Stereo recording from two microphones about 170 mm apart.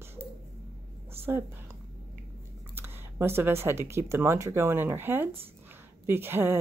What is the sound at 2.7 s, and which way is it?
Speech, 15° right (ahead or behind).